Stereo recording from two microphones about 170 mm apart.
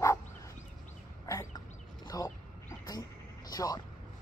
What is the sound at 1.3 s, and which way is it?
Bird, 20° left (ahead or behind).